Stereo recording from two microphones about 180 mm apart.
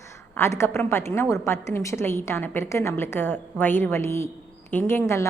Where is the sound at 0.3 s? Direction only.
15° left (ahead or behind).